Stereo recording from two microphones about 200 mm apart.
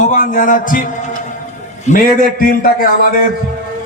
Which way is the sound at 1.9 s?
45° left (ahead or behind).